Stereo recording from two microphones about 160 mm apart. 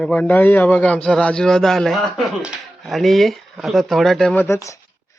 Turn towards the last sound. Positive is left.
turn(degrees=20)  # may be behind; listen again after turning